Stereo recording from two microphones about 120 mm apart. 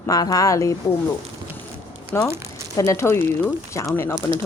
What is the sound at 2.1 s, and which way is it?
Speech, 20° left (ahead or behind).